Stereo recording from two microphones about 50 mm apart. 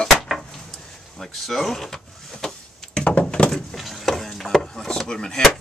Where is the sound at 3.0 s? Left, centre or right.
Left.